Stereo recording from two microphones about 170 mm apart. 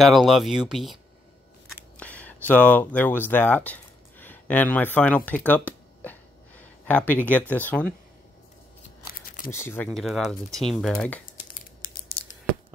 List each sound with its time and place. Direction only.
0.0 s speech: centre (ahead or behind)
1.7 s camera: 10° left (ahead or behind)
9.5 s speech: 15° left (ahead or behind)
11.8 s a sound: 55° left (ahead or behind)